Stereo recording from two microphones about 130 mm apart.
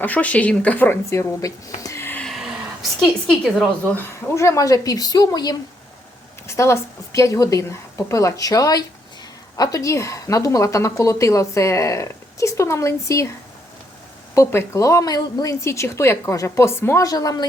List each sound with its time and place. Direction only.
0.0 s speech: 10° left (ahead or behind)
2.2 s a sound: centre (ahead or behind)
3.0 s a woman's voice: 5° left (ahead or behind)
3.9 s speech: 15° left (ahead or behind); by 5.5 s 30° left (ahead or behind)
6.5 s speech: 20° left (ahead or behind)
14.3 s speech: 20° left (ahead or behind)